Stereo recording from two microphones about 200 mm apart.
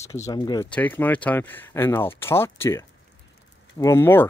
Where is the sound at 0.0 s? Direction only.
15° left (ahead or behind).